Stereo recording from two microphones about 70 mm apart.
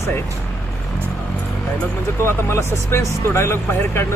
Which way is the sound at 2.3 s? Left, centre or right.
Left.